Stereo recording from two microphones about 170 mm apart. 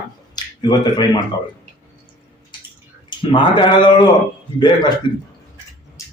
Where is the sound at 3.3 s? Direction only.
30° left (ahead or behind).